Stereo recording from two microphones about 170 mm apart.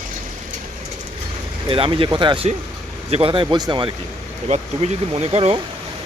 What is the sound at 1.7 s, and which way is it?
Speech, 30° right (ahead or behind).